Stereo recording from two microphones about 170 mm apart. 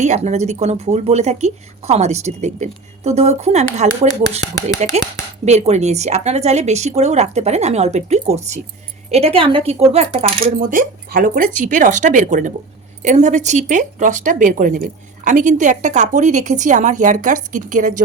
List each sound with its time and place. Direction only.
0.0 s speech: 45° right (ahead or behind)
10.6 s a woman's voice: 50° right (ahead or behind)